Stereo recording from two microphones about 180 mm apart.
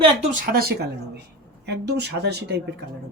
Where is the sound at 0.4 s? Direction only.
55° right (ahead or behind).